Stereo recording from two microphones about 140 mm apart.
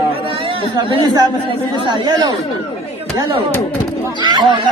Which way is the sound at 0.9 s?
30° right (ahead or behind).